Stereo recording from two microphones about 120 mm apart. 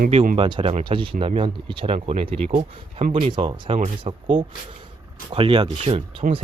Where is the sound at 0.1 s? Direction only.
55° right (ahead or behind).